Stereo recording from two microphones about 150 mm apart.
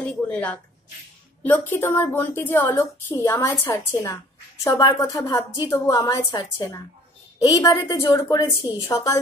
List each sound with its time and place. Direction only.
0.0 s a woman's voice: 10° left (ahead or behind)